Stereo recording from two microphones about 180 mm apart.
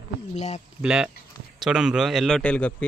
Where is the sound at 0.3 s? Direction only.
40° left (ahead or behind).